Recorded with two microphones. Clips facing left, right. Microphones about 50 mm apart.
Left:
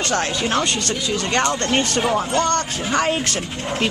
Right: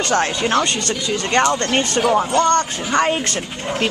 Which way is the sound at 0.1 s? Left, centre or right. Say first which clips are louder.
Right 4 dB; centre.